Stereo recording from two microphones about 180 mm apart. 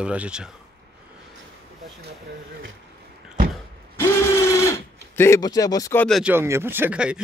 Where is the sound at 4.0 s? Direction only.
15° left (ahead or behind).